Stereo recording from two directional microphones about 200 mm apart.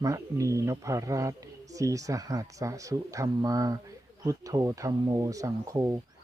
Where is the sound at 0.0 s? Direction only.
15° right (ahead or behind).